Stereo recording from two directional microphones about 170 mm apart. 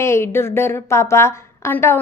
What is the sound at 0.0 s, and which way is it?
A woman's voice, 15° left (ahead or behind).